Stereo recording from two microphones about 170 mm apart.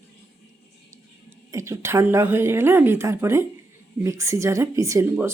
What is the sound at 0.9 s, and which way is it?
Speech, 15° right (ahead or behind).